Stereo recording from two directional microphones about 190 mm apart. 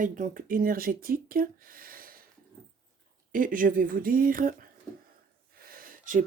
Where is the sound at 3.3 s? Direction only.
45° right (ahead or behind).